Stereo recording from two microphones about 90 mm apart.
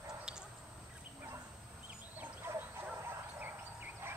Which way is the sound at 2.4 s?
25° right (ahead or behind).